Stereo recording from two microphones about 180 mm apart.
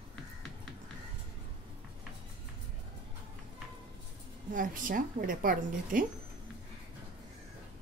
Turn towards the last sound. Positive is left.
turn(degrees=-50)  # may be behind; listen again after turning